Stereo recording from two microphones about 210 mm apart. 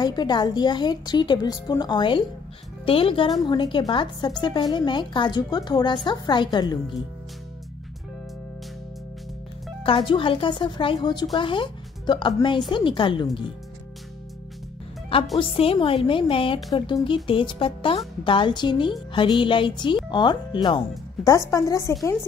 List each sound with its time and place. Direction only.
0.0 s speech: 20° left (ahead or behind)
9.8 s speech: 25° left (ahead or behind)
15.3 s speech: 25° left (ahead or behind)